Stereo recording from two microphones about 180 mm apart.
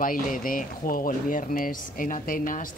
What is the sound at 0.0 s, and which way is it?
Speech, 50° left (ahead or behind).